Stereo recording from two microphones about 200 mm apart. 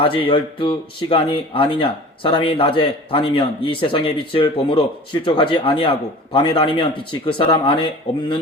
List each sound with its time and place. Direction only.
0.0 s speech: 25° left (ahead or behind)